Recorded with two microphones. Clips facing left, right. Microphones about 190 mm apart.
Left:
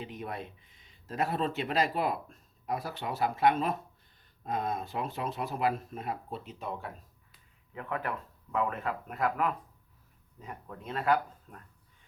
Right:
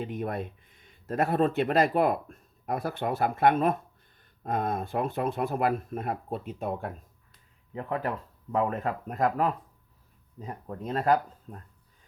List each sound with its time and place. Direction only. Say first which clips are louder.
0.0 s speech: right 7 dB; 50° right (ahead or behind)
7.7 s speech: right 4 dB; 35° right (ahead or behind)